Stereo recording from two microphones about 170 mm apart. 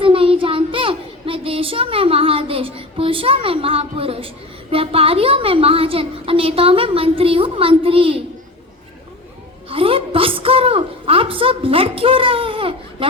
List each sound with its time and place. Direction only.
0.0 s child singing: 30° right (ahead or behind)
4.7 s a woman's voice: 35° right (ahead or behind)
9.6 s a sound: 30° right (ahead or behind)